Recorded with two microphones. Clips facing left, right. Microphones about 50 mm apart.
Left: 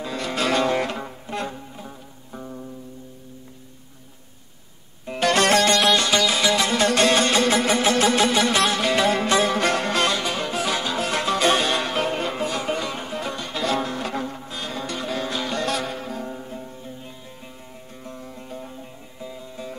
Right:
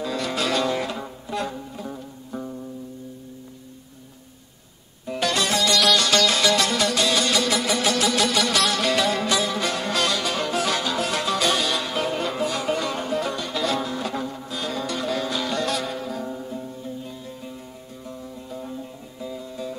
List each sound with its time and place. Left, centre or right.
0.0 s music: left
1.9 s music: centre
5.0 s music: left
5.7 s music: left
6.8 s music: left; by 13.4 s centre
13.4 s music: left
18.0 s music: left
18.6 s music: centre